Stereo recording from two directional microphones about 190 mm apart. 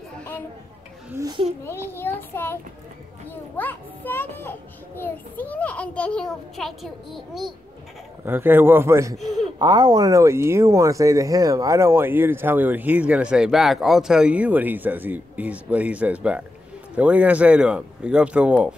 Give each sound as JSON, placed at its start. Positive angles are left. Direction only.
{"t": 1.1, "sound": "a child's voice", "side_deg": -20}
{"t": 1.6, "sound": "a child's voice", "side_deg": 10}
{"t": 8.3, "sound": "speech", "side_deg": -10}
{"t": 9.1, "sound": "speech", "side_deg": 0}
{"t": 9.6, "sound": "speech", "side_deg": -20}